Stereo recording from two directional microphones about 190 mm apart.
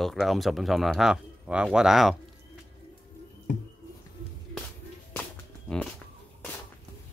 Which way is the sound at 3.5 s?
45° left (ahead or behind).